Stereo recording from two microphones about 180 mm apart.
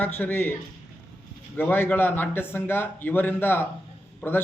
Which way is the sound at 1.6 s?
10° left (ahead or behind).